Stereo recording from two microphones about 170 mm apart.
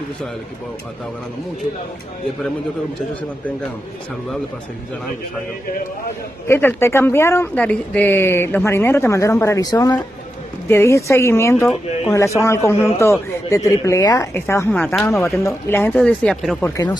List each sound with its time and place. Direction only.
6.4 s speech: 15° left (ahead or behind)
15.3 s speech: 15° left (ahead or behind)